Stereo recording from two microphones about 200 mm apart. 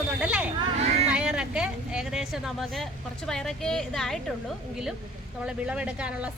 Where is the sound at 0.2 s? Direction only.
5° right (ahead or behind).